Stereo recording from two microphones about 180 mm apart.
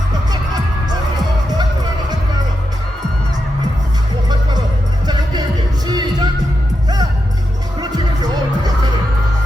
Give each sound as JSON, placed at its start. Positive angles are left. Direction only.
{"t": 0.9, "sound": "music", "side_deg": -20}
{"t": 5.0, "sound": "music", "side_deg": -25}